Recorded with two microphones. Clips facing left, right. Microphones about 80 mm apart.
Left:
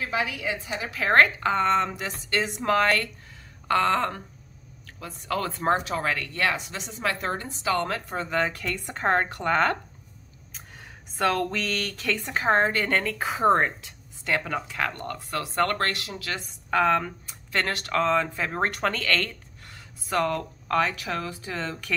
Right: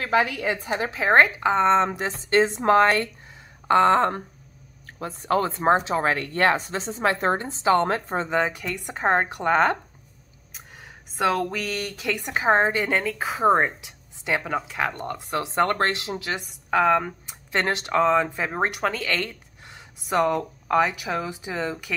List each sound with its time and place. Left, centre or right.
0.0 s a woman's voice: right
0.9 s speech: centre
11.1 s a woman's voice: centre
13.7 s speech: centre
17.0 s speech: right